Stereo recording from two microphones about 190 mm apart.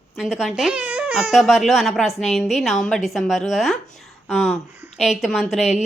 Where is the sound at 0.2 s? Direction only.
Centre (ahead or behind).